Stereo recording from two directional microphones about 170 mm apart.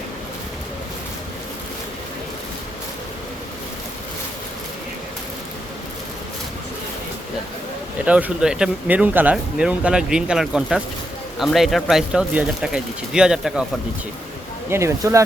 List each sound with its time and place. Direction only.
8.0 s speech: 5° right (ahead or behind)
14.7 s speech: 15° right (ahead or behind)